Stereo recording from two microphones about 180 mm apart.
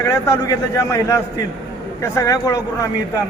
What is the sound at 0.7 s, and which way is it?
Speech, 15° left (ahead or behind).